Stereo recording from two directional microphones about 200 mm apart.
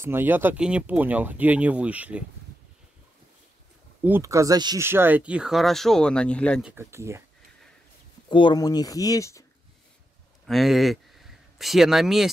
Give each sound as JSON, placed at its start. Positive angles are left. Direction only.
{"t": 0.0, "sound": "speech", "side_deg": -10}
{"t": 4.0, "sound": "speech", "side_deg": -15}
{"t": 6.7, "sound": "speech", "side_deg": -15}
{"t": 8.3, "sound": "speech", "side_deg": 25}
{"t": 10.4, "sound": "speech", "side_deg": 0}